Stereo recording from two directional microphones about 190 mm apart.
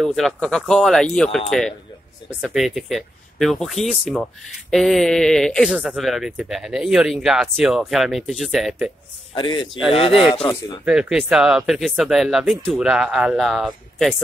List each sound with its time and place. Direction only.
0.0 s speech: centre (ahead or behind)
2.4 s speech: centre (ahead or behind)
9.3 s a man's voice: 25° left (ahead or behind)
10.9 s speech: 5° right (ahead or behind)